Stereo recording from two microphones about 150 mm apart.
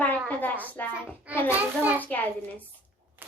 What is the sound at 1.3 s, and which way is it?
Children playing, 10° right (ahead or behind).